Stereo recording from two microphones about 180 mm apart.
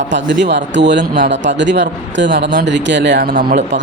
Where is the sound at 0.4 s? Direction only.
75° right (ahead or behind).